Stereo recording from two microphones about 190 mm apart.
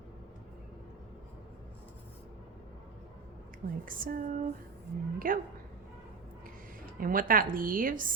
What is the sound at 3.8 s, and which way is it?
Speech, 45° right (ahead or behind).